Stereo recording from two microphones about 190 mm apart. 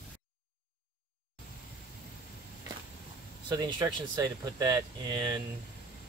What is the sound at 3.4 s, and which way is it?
Speech, 20° right (ahead or behind).